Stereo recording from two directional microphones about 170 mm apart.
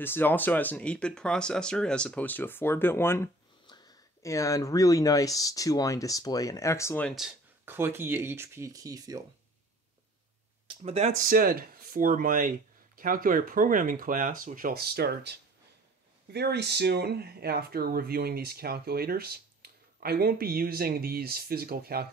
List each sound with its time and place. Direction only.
0.0 s speech: 10° left (ahead or behind)
3.6 s speech: 25° left (ahead or behind)
7.1 s speech: centre (ahead or behind)
7.6 s speech: 15° right (ahead or behind)
10.8 s speech: 40° right (ahead or behind); by 22.0 s 60° right (ahead or behind)